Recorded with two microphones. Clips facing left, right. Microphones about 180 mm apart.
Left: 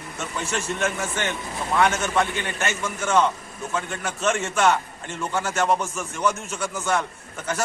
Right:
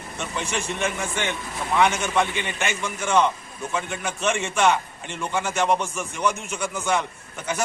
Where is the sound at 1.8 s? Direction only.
15° right (ahead or behind).